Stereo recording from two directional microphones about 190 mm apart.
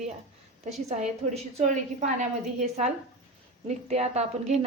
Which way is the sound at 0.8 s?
35° right (ahead or behind).